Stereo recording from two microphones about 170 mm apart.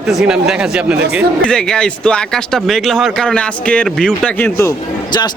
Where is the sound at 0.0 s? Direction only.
Centre (ahead or behind).